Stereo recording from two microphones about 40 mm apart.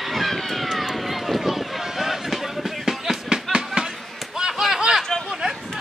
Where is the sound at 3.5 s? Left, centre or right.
Right.